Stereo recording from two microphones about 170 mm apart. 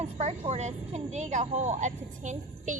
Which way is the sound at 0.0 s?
40° right (ahead or behind).